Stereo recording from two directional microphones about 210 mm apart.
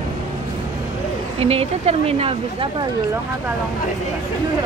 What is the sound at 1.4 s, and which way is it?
Speech, 30° right (ahead or behind).